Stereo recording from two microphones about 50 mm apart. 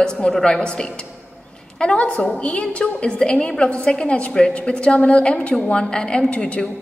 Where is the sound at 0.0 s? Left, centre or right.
Centre.